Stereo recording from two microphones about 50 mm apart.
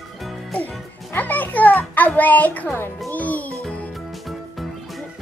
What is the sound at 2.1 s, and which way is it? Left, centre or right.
Speech, left.